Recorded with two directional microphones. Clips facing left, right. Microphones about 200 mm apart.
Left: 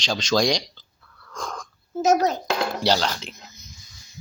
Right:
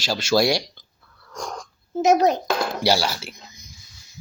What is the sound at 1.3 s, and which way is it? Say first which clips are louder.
Sniff: right 1 dB; 20° right (ahead or behind).